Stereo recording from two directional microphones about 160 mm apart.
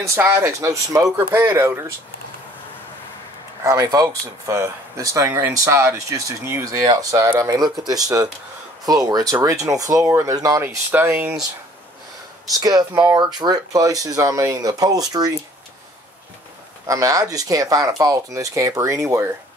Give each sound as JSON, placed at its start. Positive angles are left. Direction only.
{"t": 0.0, "sound": "speech", "side_deg": -15}
{"t": 3.6, "sound": "speech", "side_deg": -20}
{"t": 12.5, "sound": "speech", "side_deg": -25}
{"t": 16.8, "sound": "speech", "side_deg": -20}